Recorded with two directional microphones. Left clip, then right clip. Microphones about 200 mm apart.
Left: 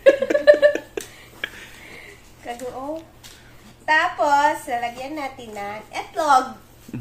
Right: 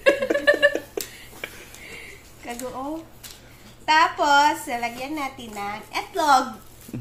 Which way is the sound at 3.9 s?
15° left (ahead or behind).